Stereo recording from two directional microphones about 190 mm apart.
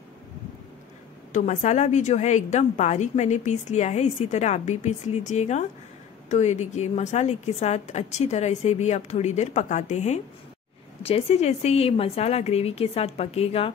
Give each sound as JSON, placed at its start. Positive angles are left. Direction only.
{"t": 1.3, "sound": "a woman's voice", "side_deg": 40}